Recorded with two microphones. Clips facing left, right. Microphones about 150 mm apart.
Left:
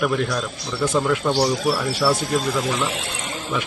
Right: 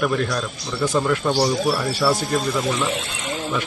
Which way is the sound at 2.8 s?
45° right (ahead or behind).